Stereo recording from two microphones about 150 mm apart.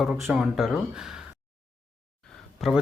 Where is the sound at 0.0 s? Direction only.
Centre (ahead or behind).